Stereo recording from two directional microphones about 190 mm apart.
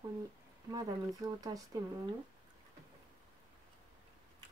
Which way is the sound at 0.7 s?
20° right (ahead or behind).